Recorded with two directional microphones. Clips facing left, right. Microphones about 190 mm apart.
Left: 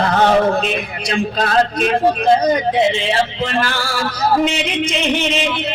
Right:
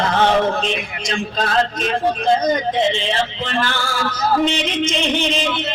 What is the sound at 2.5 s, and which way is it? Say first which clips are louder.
Speech: left 3 dB; 5° left (ahead or behind).